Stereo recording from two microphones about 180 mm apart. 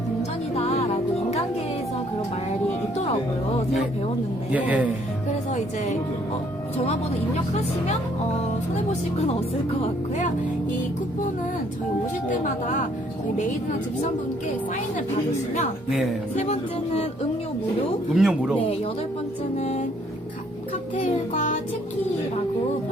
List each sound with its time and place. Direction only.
0.5 s music: 35° left (ahead or behind)
4.5 s speech: 10° right (ahead or behind)
5.5 s speech: 40° left (ahead or behind)
8.7 s music: 40° left (ahead or behind)
12.3 s speech: 45° left (ahead or behind)
16.3 s music: 35° left (ahead or behind)
18.1 s speech: 5° right (ahead or behind)
19.5 s music: 40° left (ahead or behind)